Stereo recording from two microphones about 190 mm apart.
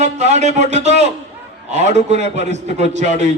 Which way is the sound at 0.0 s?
35° right (ahead or behind).